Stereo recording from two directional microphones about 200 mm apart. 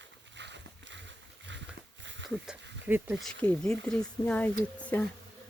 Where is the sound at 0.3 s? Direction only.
60° right (ahead or behind).